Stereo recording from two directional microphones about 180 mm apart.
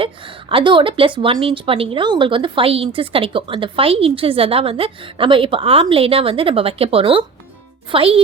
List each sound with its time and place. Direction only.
0.0 s a woman's voice: 30° right (ahead or behind)